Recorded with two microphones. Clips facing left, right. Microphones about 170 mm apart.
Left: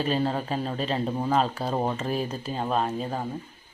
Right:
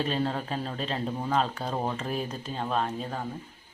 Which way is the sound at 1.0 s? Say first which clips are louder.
Left 4 dB; 20° left (ahead or behind).